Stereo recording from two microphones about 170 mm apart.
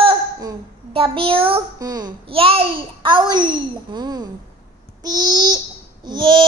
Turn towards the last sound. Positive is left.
turn(degrees=-25)  # may be behind; listen again after turning